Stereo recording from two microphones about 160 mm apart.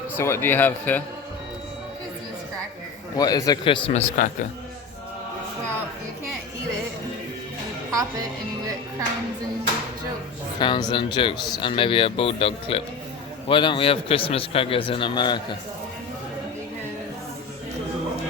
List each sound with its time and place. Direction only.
0.2 s a man's voice: 15° left (ahead or behind)
3.2 s a man's voice: 25° left (ahead or behind)
3.9 s a man's voice: 50° left (ahead or behind)
10.6 s a man's voice: 30° left (ahead or behind)